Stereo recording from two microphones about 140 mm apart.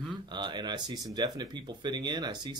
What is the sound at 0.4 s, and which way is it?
Speech, 30° right (ahead or behind).